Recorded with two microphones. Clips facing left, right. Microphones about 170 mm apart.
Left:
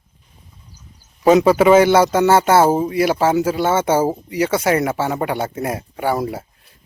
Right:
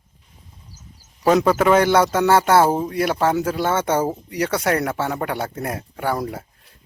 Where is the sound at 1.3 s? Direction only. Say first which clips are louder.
Left 4 dB; 5° left (ahead or behind).